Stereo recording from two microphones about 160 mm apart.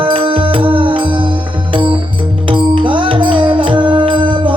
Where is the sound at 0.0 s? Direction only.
35° right (ahead or behind).